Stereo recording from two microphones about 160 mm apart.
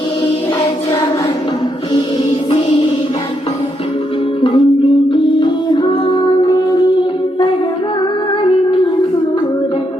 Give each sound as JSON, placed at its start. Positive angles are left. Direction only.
{"t": 4.4, "sound": "music", "side_deg": 30}